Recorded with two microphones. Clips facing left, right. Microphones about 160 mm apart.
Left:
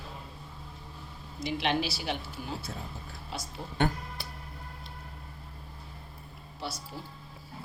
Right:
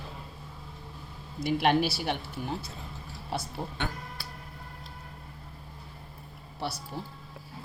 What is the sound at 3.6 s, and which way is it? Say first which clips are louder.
Speech: right 5 dB; 55° right (ahead or behind).